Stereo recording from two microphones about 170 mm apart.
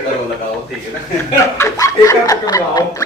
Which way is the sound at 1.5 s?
15° left (ahead or behind).